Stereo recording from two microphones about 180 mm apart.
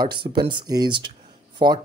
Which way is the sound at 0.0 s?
25° right (ahead or behind).